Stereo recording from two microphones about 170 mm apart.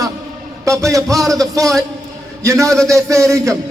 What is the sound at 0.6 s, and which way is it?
A man's voice, 20° right (ahead or behind).